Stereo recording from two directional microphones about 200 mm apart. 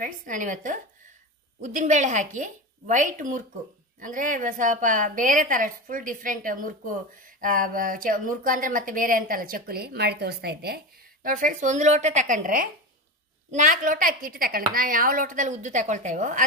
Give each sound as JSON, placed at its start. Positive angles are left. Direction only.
{"t": 0.0, "sound": "a woman's voice", "side_deg": -40}
{"t": 11.2, "sound": "a woman's voice", "side_deg": -40}